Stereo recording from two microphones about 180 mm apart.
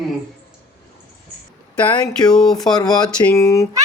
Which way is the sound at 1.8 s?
5° left (ahead or behind).